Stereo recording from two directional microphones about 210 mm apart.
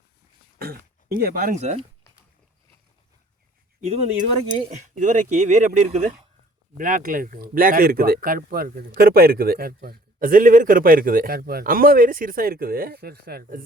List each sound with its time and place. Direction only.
0.6 s speech: 45° right (ahead or behind)
3.8 s a man's voice: 30° right (ahead or behind)